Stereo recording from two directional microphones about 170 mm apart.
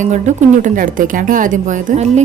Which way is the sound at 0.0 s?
45° right (ahead or behind).